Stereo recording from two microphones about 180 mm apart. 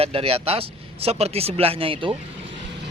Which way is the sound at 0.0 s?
35° right (ahead or behind).